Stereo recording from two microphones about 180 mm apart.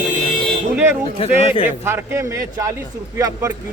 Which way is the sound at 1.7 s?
15° right (ahead or behind).